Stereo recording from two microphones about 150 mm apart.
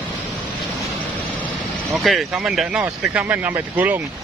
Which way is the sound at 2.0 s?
Centre (ahead or behind).